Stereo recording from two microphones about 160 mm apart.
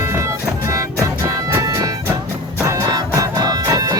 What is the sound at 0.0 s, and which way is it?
Music, 15° right (ahead or behind).